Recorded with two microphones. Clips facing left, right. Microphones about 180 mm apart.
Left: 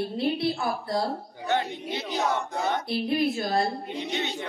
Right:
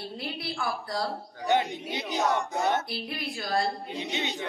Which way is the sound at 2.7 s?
25° left (ahead or behind).